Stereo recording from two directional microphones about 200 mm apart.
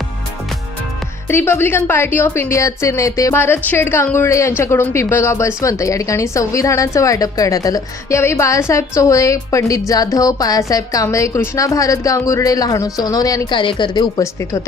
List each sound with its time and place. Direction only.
1.3 s a woman's voice: 10° left (ahead or behind)